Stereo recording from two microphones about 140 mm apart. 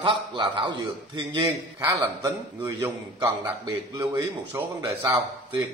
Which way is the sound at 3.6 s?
30° right (ahead or behind).